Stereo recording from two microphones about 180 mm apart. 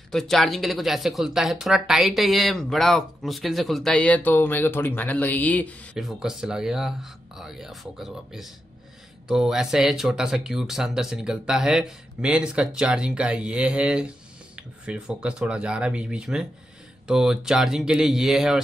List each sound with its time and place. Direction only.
0.1 s speech: centre (ahead or behind)
5.9 s speech: centre (ahead or behind)